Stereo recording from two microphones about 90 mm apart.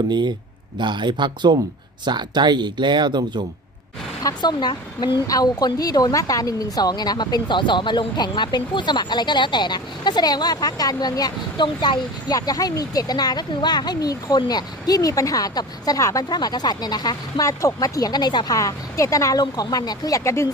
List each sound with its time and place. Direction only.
0.1 s speech: 55° right (ahead or behind)
4.2 s speech: 45° left (ahead or behind)
5.3 s speech: 45° left (ahead or behind)
11.6 s speech: 55° left (ahead or behind)
12.4 s speech: 40° left (ahead or behind)